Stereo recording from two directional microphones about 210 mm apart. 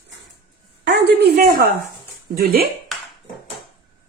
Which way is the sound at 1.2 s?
50° right (ahead or behind).